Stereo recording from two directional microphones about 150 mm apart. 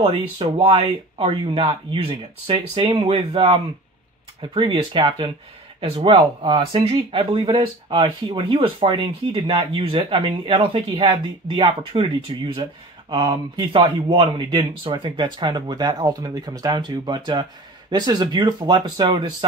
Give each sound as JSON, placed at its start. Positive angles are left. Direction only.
{"t": 0.0, "sound": "speech", "side_deg": -35}